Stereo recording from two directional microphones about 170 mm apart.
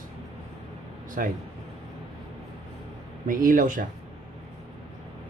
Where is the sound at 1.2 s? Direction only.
55° right (ahead or behind).